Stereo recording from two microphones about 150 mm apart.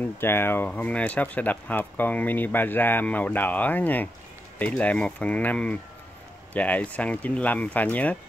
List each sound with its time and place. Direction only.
0.0 s speech: 15° left (ahead or behind)